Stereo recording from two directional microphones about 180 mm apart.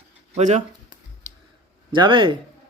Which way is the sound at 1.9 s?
25° right (ahead or behind).